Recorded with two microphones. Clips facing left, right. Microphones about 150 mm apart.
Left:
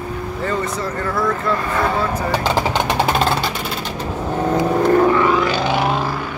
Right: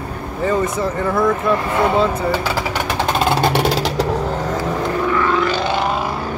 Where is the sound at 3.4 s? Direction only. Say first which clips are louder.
Right 8 dB; 80° right.